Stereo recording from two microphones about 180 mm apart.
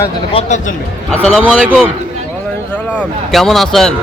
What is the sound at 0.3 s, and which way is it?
Speech, 40° left (ahead or behind).